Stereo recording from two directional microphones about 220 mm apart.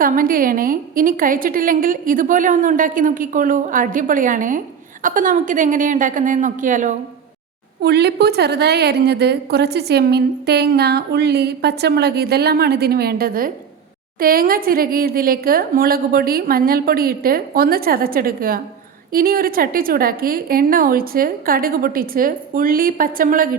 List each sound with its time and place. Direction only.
0.0 s a woman's voice: 40° right (ahead or behind)
7.8 s a woman's voice: 50° right (ahead or behind)